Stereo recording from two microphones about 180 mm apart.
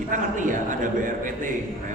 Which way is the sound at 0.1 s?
45° right (ahead or behind).